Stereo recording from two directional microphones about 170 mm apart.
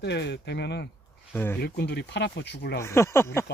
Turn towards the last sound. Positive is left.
turn(degrees=15)  # may be behind; listen again after turning